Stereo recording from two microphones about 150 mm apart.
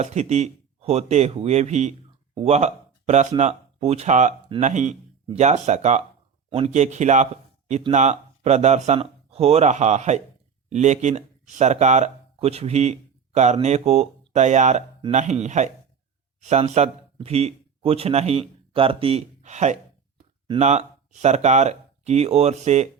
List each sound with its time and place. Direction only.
0.0 s speech: 50° right (ahead or behind)